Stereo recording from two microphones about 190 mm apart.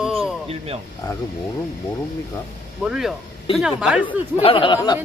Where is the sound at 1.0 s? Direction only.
20° left (ahead or behind).